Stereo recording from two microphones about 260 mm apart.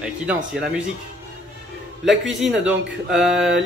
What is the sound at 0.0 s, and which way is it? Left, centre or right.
Speech, centre.